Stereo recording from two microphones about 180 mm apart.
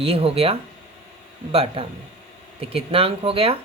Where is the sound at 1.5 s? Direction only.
30° right (ahead or behind).